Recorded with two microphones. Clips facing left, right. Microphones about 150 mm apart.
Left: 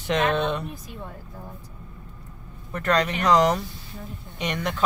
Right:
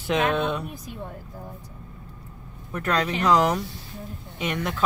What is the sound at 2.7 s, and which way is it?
Speech, 5° right (ahead or behind).